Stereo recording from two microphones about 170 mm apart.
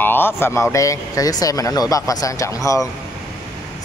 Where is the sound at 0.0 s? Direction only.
10° left (ahead or behind).